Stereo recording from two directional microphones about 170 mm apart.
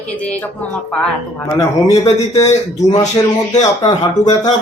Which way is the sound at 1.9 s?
40° left (ahead or behind).